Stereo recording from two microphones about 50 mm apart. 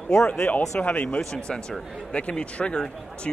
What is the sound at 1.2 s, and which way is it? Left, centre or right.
Speech, centre.